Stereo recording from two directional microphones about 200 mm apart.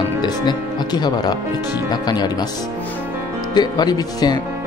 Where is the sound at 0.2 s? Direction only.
20° left (ahead or behind).